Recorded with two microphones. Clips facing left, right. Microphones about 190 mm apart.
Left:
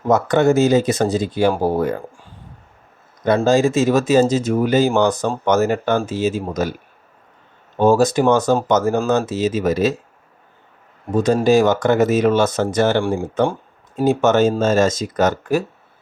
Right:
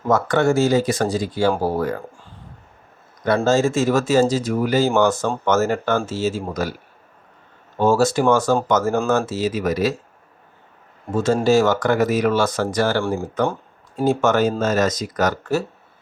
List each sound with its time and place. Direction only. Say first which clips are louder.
0.1 s speech: left 3 dB; 20° left (ahead or behind)
3.2 s speech: left 2 dB; 15° left (ahead or behind)
7.8 s speech: left 3 dB; 15° left (ahead or behind)
11.1 s speech: left 2 dB; 15° left (ahead or behind)
13.2 s speech: left 3 dB; 30° left (ahead or behind)
13.5 s speech: left 1 dB; 20° left (ahead or behind)